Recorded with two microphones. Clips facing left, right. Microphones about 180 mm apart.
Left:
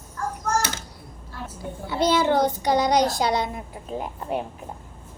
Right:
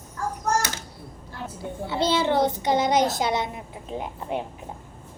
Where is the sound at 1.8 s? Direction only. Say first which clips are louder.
Left 2 dB; 25° right (ahead or behind).